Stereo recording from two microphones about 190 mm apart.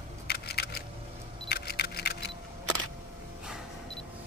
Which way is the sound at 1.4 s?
55° left (ahead or behind).